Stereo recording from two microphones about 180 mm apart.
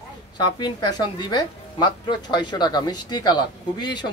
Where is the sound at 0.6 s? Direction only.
25° left (ahead or behind).